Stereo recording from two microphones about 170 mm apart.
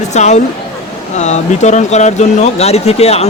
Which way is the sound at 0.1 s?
40° left (ahead or behind).